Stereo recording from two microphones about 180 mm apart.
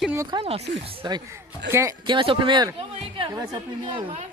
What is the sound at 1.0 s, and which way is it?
Speech, 25° right (ahead or behind).